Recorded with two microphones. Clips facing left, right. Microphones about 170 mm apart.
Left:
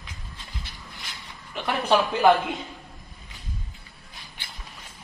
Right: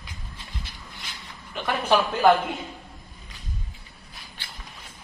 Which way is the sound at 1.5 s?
5° left (ahead or behind).